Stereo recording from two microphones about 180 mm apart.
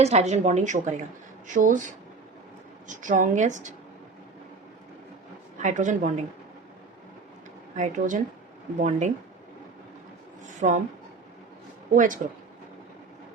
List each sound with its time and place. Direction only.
0.0 s a woman's voice: 40° right (ahead or behind)
2.8 s speech: 45° right (ahead or behind)
5.6 s speech: 45° right (ahead or behind)
7.8 s a woman's voice: 45° right (ahead or behind)
10.4 s speech: 45° right (ahead or behind)
11.9 s speech: 45° right (ahead or behind)